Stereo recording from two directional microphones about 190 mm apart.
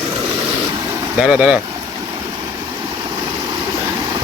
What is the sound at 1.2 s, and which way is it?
Speech, 5° right (ahead or behind).